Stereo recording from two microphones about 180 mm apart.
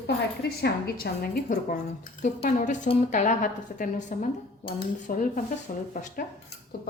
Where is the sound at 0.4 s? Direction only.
60° left (ahead or behind); by 5.8 s 40° left (ahead or behind).